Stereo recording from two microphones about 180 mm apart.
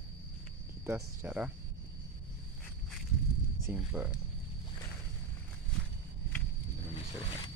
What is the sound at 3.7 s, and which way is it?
Speech, 10° right (ahead or behind).